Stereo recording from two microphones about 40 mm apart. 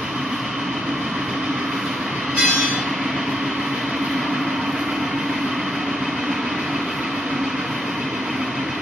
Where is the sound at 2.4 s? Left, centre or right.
Right.